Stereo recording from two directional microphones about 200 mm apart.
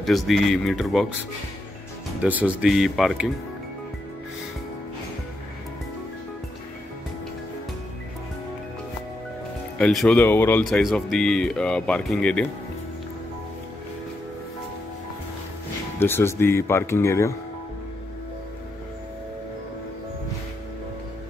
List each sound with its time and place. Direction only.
0.0 s speech: centre (ahead or behind)
2.2 s speech: 5° right (ahead or behind)
9.8 s speech: 5° left (ahead or behind)
16.0 s speech: 10° left (ahead or behind)